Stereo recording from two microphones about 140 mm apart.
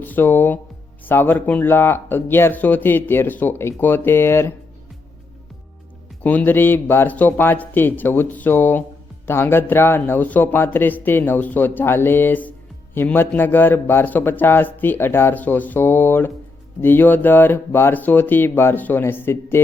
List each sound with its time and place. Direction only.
0.0 s speech: 15° left (ahead or behind)
6.2 s speech: 15° left (ahead or behind)